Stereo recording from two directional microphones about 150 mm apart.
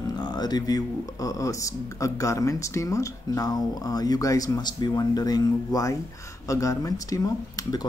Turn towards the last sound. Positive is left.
turn(degrees=20)  # may be behind; listen again after turning